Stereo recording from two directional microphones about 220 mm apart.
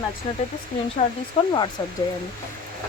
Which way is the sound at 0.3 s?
30° left (ahead or behind).